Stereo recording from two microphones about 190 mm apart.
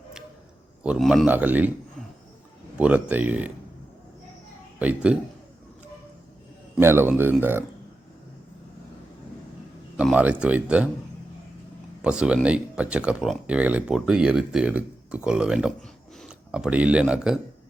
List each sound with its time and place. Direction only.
0.9 s speech: centre (ahead or behind)
2.7 s speech: 5° right (ahead or behind)
4.8 s speech: 10° right (ahead or behind)
6.7 s speech: 10° right (ahead or behind)
10.0 s speech: 5° right (ahead or behind)
12.0 s speech: 5° right (ahead or behind)